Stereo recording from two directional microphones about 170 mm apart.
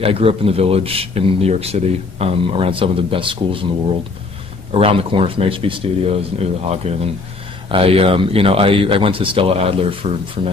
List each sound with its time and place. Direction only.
0.0 s speech: 35° right (ahead or behind)
4.7 s speech: 30° right (ahead or behind)